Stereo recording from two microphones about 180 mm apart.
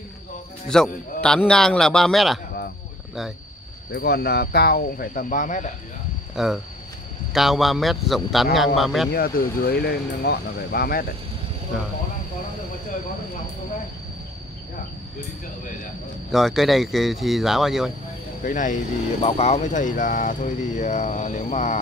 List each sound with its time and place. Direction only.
0.7 s speech: 5° left (ahead or behind)
3.9 s speech: 65° left (ahead or behind); by 5.7 s 45° left (ahead or behind)
6.3 s speech: centre (ahead or behind)
9.1 s speech: 55° left (ahead or behind)
16.3 s speech: centre (ahead or behind)
18.4 s speech: 45° left (ahead or behind)